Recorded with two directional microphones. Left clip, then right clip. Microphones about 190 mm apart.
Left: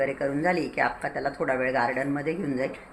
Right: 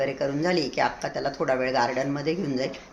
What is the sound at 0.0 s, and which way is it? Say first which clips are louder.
Speech: even; 20° right (ahead or behind).